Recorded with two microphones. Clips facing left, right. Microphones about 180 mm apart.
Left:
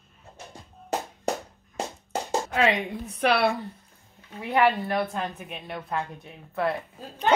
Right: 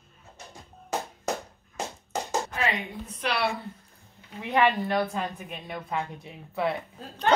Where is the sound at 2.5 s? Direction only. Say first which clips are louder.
Left 6 dB; 80° left; by 3.5 s 55° left (ahead or behind).